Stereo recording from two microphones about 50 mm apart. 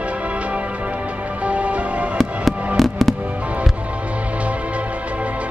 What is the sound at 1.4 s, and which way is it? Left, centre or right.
Music, right.